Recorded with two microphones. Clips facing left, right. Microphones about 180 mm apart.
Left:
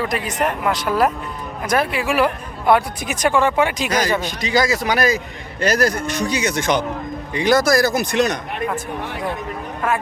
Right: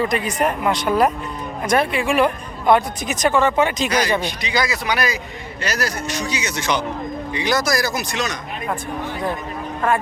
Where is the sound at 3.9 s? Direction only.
45° left (ahead or behind).